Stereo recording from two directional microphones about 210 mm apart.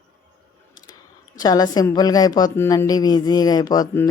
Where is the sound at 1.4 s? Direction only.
20° left (ahead or behind).